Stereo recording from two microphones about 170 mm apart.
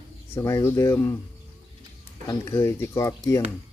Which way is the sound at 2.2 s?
20° left (ahead or behind).